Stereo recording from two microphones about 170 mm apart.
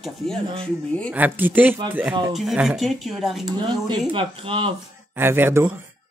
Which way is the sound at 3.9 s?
30° right (ahead or behind).